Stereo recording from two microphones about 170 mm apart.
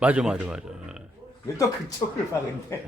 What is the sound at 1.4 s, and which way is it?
Speech, 20° left (ahead or behind).